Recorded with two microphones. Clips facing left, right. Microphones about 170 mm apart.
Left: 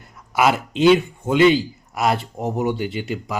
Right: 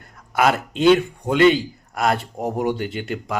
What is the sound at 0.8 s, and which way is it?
Speech, centre (ahead or behind).